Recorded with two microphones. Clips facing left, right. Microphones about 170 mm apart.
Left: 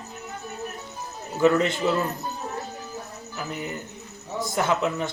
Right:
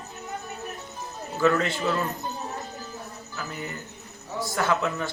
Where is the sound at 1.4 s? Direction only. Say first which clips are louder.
Left 3 dB; 20° left (ahead or behind).